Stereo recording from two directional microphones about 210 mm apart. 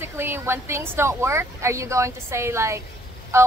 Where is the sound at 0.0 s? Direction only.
10° right (ahead or behind).